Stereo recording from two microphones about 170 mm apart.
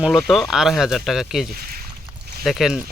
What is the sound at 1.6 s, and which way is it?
Speech, 60° right (ahead or behind).